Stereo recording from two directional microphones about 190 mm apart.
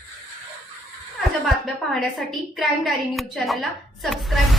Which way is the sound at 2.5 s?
Centre (ahead or behind).